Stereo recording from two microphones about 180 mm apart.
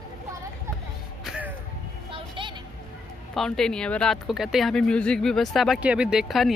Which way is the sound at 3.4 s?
5° left (ahead or behind).